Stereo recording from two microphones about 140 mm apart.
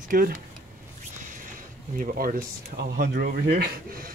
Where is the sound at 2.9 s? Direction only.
90° right.